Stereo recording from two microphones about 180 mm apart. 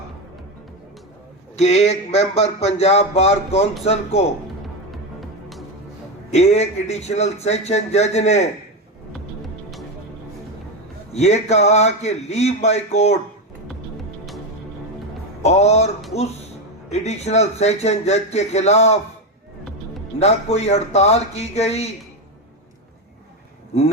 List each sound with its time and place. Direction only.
1.5 s speech: 35° left (ahead or behind)
4.9 s music: centre (ahead or behind)
6.3 s speech: 35° left (ahead or behind)
11.1 s speech: 35° left (ahead or behind)
15.4 s speech: 35° left (ahead or behind)
16.9 s speech: 35° left (ahead or behind)
20.1 s speech: 35° left (ahead or behind)